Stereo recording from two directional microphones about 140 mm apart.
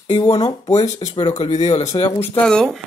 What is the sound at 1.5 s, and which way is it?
Speech, 55° left (ahead or behind).